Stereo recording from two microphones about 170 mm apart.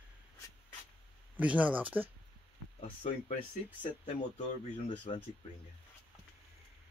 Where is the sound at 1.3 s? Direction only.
10° right (ahead or behind).